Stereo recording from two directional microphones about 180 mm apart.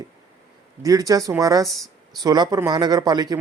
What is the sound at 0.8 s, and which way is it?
A man's voice, 20° right (ahead or behind).